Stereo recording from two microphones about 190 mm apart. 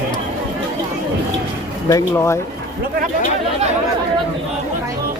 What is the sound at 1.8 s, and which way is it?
Speech, 15° left (ahead or behind).